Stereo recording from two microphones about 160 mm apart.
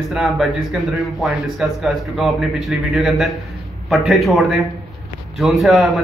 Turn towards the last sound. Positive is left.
turn(degrees=0)  # may be behind; listen again after turning